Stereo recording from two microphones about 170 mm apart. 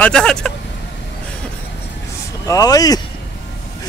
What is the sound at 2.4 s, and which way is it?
Speech, 20° left (ahead or behind).